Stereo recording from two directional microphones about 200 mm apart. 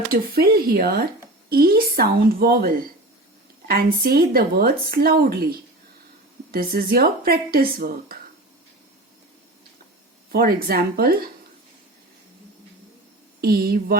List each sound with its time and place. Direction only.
0.1 s speech: 50° right (ahead or behind)
10.3 s speech: 50° right (ahead or behind)
13.4 s speech: 50° right (ahead or behind)